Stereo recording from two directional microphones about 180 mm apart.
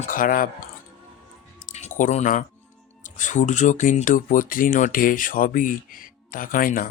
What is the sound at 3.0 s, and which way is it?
Speech, 45° left (ahead or behind).